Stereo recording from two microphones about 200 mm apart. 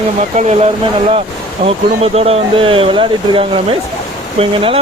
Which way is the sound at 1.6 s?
30° right (ahead or behind).